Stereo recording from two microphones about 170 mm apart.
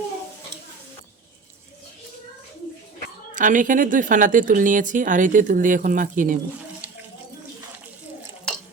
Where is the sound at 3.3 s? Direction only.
50° right (ahead or behind).